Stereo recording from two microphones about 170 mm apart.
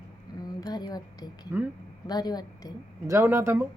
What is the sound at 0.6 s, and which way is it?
A woman's voice, 25° left (ahead or behind).